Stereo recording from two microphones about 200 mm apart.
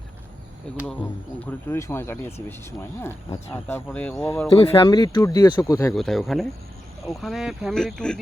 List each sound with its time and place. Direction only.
1.4 s speech: 10° left (ahead or behind)
4.5 s speech: 25° left (ahead or behind)
5.9 s speech: centre (ahead or behind)